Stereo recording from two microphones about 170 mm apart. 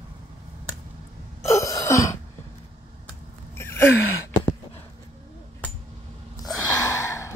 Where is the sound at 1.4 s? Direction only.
20° left (ahead or behind).